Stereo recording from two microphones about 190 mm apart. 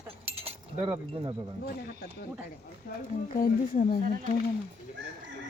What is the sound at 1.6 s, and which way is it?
Speech, 55° left (ahead or behind).